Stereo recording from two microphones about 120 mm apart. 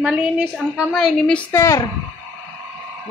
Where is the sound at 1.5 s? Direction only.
20° left (ahead or behind).